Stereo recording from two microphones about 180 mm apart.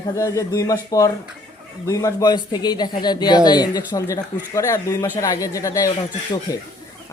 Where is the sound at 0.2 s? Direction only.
15° left (ahead or behind).